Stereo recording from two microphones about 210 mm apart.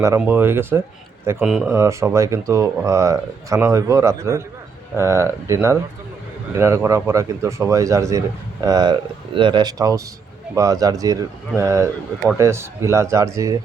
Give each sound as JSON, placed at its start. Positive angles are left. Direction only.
{"t": 0.0, "sound": "speech", "side_deg": -10}
{"t": 1.7, "sound": "speech", "side_deg": -15}